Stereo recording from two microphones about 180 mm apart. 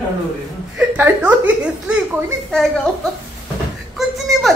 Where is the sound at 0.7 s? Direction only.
10° right (ahead or behind).